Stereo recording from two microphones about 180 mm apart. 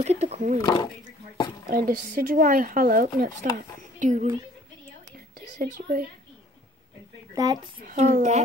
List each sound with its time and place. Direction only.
0.0 s speech: 35° right (ahead or behind)
0.6 s speech: 20° left (ahead or behind)
1.7 s speech: 50° right (ahead or behind)
3.5 s a sound: 40° right (ahead or behind)
5.6 s speech: 55° right (ahead or behind)
7.3 s speech: 20° right (ahead or behind)
7.8 s a child's voice: 45° right (ahead or behind)